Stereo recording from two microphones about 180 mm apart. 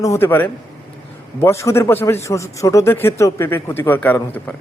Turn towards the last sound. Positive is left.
turn(degrees=10)  # may be behind; listen again after turning